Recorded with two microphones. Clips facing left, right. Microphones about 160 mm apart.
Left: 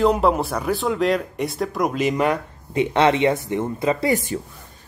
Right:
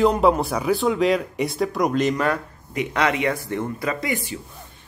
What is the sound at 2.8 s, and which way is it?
Speech, 25° left (ahead or behind).